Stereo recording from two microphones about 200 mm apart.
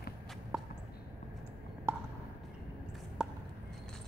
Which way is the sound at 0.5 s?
5° right (ahead or behind).